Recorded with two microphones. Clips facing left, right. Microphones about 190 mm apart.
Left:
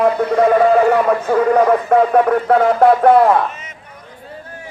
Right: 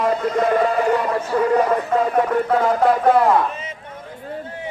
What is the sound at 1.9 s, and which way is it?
A man's voice, 60° left (ahead or behind).